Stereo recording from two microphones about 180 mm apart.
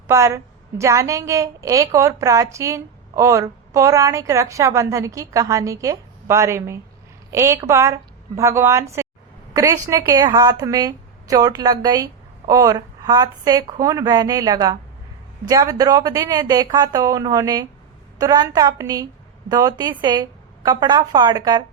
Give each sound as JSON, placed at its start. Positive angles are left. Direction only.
{"t": 0.1, "sound": "a woman's voice", "side_deg": -15}